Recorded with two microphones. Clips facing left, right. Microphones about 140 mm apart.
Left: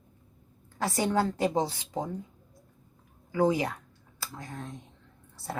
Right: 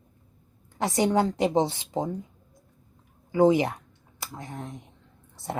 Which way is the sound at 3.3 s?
25° right (ahead or behind).